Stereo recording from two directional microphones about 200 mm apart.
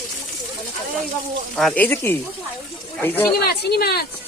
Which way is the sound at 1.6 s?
5° left (ahead or behind).